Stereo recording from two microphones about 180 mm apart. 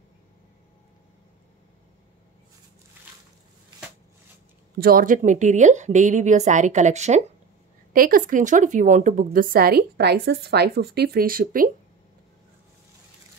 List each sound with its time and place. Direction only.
4.7 s a woman's voice: 55° right (ahead or behind)
7.9 s a woman's voice: 50° right (ahead or behind)